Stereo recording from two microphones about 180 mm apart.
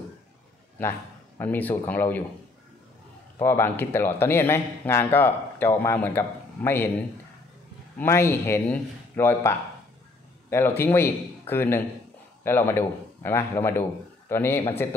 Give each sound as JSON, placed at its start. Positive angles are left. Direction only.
{"t": 0.8, "sound": "a man's voice", "side_deg": 10}
{"t": 3.3, "sound": "a man's voice", "side_deg": 15}
{"t": 8.0, "sound": "a man's voice", "side_deg": 15}